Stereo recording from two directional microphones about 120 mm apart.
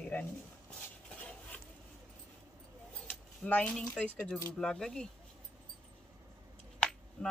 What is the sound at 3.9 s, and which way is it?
Speech, 10° left (ahead or behind).